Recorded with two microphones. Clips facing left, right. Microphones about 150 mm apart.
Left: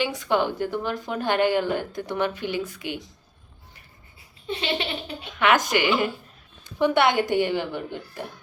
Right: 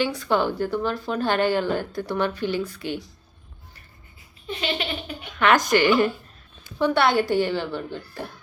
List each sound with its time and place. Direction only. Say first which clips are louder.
0.0 s a woman's voice: right 1 dB; 15° left (ahead or behind)
4.4 s laughter: even; 25° left (ahead or behind)
5.4 s a woman's voice: right 2 dB; 10° left (ahead or behind)